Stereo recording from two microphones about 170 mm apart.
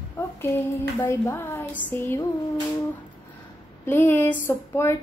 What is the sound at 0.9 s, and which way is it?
Speech, 15° left (ahead or behind).